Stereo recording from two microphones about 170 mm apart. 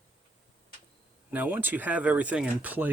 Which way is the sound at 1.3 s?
10° right (ahead or behind).